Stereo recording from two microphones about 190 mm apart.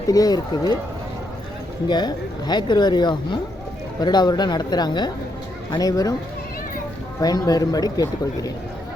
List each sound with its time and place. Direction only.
0.1 s speech: 20° left (ahead or behind)
1.9 s speech: 20° left (ahead or behind)
7.2 s speech: 20° left (ahead or behind)